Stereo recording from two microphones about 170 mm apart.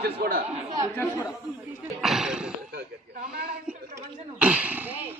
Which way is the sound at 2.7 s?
65° right (ahead or behind).